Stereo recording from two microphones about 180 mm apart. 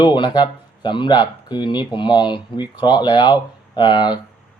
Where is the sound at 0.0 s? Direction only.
25° left (ahead or behind).